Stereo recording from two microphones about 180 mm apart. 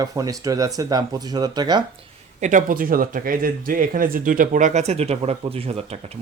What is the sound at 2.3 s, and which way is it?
Speech, 45° right (ahead or behind).